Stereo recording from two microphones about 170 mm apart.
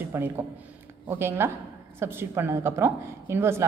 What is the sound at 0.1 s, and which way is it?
A woman's voice, 15° right (ahead or behind).